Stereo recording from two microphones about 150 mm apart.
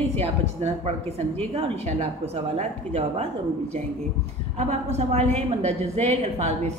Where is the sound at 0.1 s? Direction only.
45° right (ahead or behind).